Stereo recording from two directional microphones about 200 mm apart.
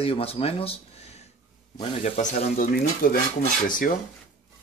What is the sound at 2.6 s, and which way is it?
Speech, 45° left (ahead or behind).